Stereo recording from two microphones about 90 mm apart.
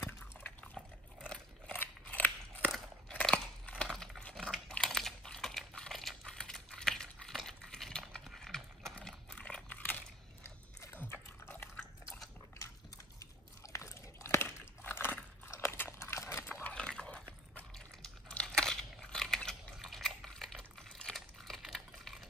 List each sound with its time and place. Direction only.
0.3 s drip: 15° left (ahead or behind)
1.7 s crunch: 20° left (ahead or behind)
3.1 s a sound: 10° left (ahead or behind)
4.7 s computer keyboard: 5° left (ahead or behind)
8.4 s horse: 5° left (ahead or behind)
9.7 s biting: 20° left (ahead or behind)
12.5 s biting: 40° left (ahead or behind)
14.8 s dog: 25° left (ahead or behind)
15.4 s biting: 30° left (ahead or behind)
16.6 s a sound: 10° left (ahead or behind)